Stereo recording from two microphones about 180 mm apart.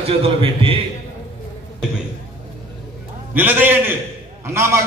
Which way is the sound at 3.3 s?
10° right (ahead or behind).